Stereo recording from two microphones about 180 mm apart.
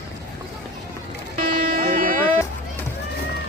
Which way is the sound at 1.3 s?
50° right (ahead or behind).